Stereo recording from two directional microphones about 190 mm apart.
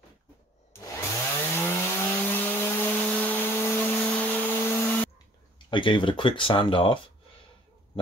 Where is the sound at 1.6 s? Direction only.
10° left (ahead or behind).